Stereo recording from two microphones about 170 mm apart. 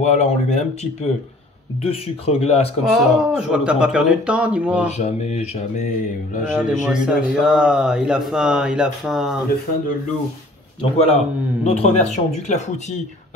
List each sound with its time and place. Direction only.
0.0 s speech: 40° left (ahead or behind)
2.8 s speech: 5° right (ahead or behind)
4.9 s speech: 40° left (ahead or behind)
6.5 s speech: 5° right (ahead or behind)
11.6 s speech: 40° left (ahead or behind)